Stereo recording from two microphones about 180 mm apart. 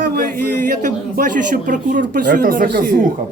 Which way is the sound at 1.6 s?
45° right (ahead or behind).